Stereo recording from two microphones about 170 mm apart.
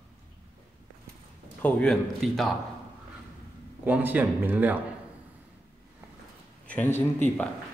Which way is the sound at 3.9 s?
10° right (ahead or behind).